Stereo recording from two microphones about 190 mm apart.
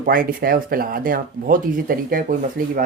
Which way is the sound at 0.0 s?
50° right (ahead or behind).